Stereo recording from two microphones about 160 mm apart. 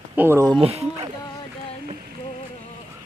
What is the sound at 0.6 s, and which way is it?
Speech, 40° right (ahead or behind).